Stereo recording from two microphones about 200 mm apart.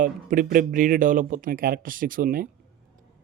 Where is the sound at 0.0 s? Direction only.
40° right (ahead or behind).